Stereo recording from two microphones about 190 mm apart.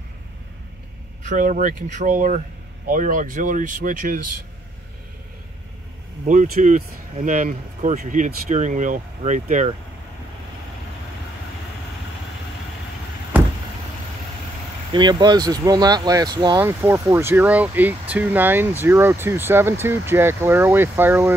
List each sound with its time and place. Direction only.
1.2 s speech: 40° right (ahead or behind)
6.2 s speech: 40° right (ahead or behind)
14.9 s speech: 25° right (ahead or behind)
16.6 s speech: 10° right (ahead or behind)